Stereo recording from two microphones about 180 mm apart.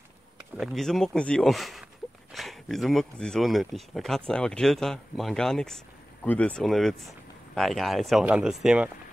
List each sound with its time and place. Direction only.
0.6 s speech: centre (ahead or behind)